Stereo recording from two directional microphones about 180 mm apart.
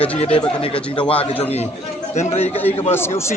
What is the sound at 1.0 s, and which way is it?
Speech, 10° left (ahead or behind).